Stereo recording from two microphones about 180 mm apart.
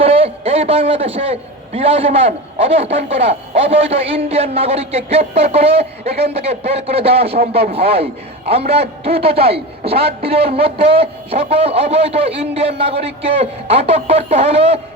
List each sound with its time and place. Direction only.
0.0 s a man's voice: 35° right (ahead or behind)